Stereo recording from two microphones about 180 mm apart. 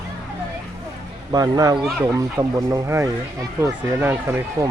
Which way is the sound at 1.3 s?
20° right (ahead or behind).